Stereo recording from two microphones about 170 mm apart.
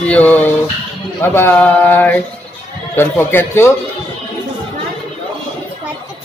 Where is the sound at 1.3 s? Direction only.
10° left (ahead or behind).